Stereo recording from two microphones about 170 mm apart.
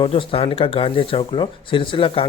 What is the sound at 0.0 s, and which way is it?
Speech, 30° left (ahead or behind).